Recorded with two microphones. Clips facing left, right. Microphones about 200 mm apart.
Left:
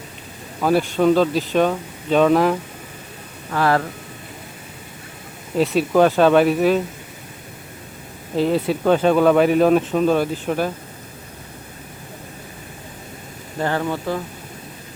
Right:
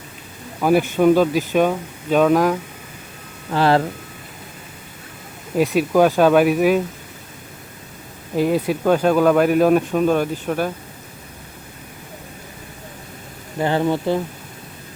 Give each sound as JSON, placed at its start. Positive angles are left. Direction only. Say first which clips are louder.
{"t": 0.6, "sound": "speech", "louder": "right 2 dB", "side_deg": -15}
{"t": 3.5, "sound": "speech", "louder": "right 2 dB", "side_deg": -25}
{"t": 5.5, "sound": "speech", "louder": "even", "side_deg": -15}
{"t": 8.4, "sound": "speech", "louder": "even", "side_deg": -10}
{"t": 13.6, "sound": "speech", "louder": "right 3 dB", "side_deg": -20}